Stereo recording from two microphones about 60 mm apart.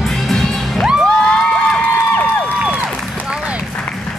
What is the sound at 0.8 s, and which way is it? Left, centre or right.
Children shouting, centre.